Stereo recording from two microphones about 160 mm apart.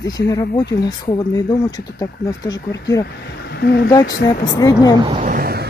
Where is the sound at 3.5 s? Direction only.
90° left.